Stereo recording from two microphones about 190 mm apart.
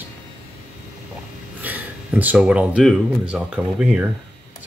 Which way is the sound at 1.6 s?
10° right (ahead or behind).